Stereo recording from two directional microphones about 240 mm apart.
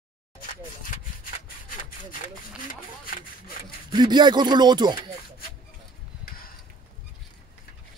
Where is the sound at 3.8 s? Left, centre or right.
Centre.